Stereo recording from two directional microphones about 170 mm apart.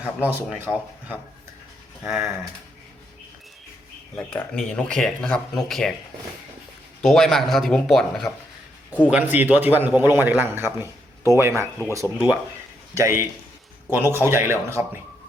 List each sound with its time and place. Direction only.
0.0 s a man's voice: 10° right (ahead or behind)
4.1 s speech: 10° left (ahead or behind)
7.0 s speech: centre (ahead or behind)
9.0 s a man's voice: 10° right (ahead or behind)